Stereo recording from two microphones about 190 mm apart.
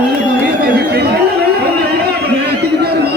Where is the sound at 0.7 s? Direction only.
55° right (ahead or behind).